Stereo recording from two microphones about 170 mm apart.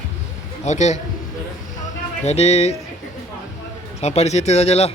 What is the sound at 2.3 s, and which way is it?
Speech, 40° left (ahead or behind).